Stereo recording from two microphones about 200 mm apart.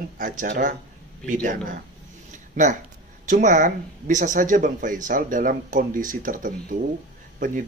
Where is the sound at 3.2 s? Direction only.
40° right (ahead or behind).